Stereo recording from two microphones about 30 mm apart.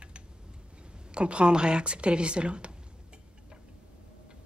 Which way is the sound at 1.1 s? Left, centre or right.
Right.